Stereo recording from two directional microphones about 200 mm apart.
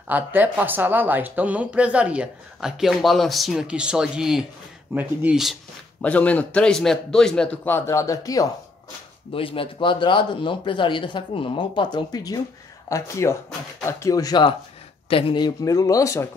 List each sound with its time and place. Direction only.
0.1 s a man's voice: 10° right (ahead or behind); by 16.3 s 15° left (ahead or behind)